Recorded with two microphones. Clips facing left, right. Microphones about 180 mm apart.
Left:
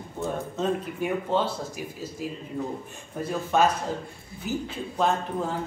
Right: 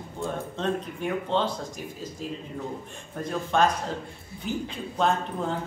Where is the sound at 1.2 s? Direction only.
10° left (ahead or behind).